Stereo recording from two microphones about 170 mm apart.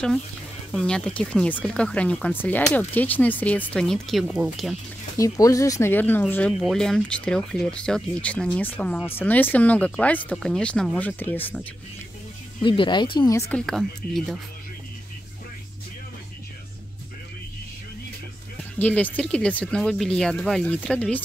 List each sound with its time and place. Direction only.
0.7 s speech: 5° left (ahead or behind)
5.1 s speech: 20° left (ahead or behind)
12.6 s speech: 30° left (ahead or behind)
13.5 s speech: 5° left (ahead or behind)
18.8 s speech: 10° left (ahead or behind)